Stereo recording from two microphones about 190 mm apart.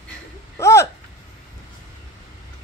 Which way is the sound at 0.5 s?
15° left (ahead or behind).